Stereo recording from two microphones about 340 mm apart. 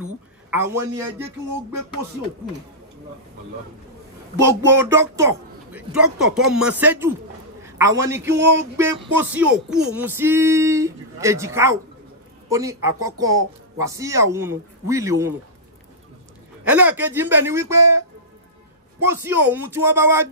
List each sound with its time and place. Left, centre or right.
0.5 s music: centre
4.4 s music: centre
6.5 s a man's voice: centre
8.3 s a sound: right
8.7 s music: centre
16.6 s music: centre